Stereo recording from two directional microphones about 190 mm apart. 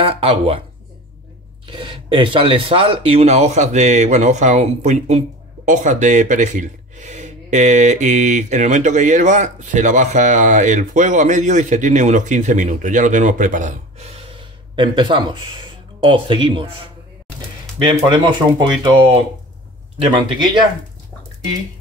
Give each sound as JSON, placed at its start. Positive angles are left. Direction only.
{"t": 0.0, "sound": "speech", "side_deg": -30}
{"t": 1.7, "sound": "speech", "side_deg": -25}
{"t": 18.0, "sound": "speech", "side_deg": -25}